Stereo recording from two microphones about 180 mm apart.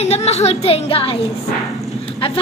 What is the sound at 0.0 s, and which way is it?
A woman's voice, 35° left (ahead or behind).